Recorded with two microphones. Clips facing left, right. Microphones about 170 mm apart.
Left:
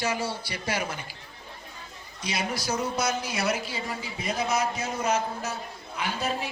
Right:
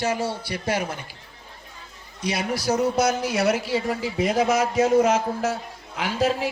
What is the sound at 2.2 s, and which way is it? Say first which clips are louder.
A woman's voice: right 5 dB; 65° right (ahead or behind).